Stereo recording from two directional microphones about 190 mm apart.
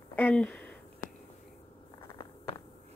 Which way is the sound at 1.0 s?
45° left (ahead or behind).